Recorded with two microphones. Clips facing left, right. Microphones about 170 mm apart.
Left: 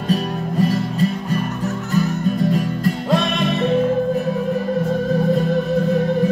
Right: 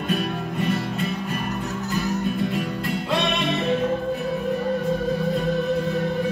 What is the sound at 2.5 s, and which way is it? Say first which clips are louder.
Music: left 6 dB; 40° left (ahead or behind).